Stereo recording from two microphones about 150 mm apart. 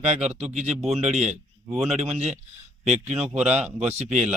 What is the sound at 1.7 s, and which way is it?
Speech, centre (ahead or behind).